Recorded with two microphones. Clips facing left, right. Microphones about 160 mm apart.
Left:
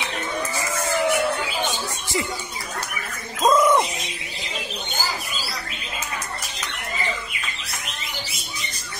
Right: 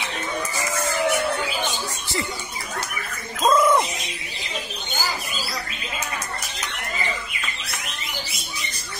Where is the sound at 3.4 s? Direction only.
15° left (ahead or behind).